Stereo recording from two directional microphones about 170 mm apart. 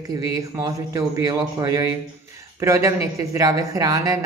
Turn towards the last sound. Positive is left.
turn(degrees=-20)  # may be behind; listen again after turning